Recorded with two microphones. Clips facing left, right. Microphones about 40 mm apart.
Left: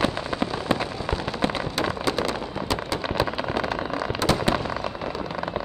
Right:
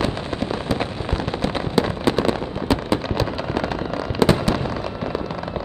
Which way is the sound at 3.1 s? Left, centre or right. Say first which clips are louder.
Right 1 dB; centre.